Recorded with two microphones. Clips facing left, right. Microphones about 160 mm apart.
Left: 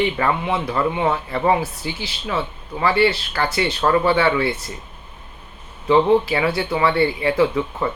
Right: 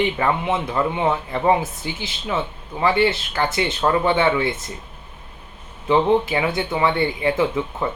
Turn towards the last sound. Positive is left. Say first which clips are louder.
# left 2 dB
turn(degrees=-15)  # may be behind; listen again after turning